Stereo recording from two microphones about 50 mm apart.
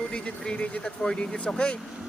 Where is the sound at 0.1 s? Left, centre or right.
Left.